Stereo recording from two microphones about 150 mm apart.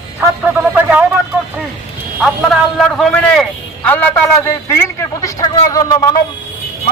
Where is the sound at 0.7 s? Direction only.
10° right (ahead or behind).